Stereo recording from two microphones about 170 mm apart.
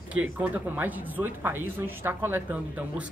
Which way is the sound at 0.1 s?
10° right (ahead or behind).